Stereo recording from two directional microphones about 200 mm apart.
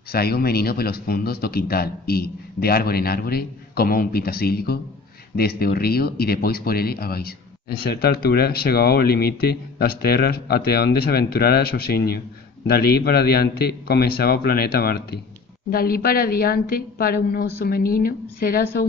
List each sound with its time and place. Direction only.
0.1 s speech: 50° left (ahead or behind)